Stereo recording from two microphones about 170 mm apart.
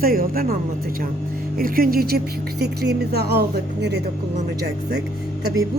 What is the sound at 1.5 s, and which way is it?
Speech, 60° right (ahead or behind).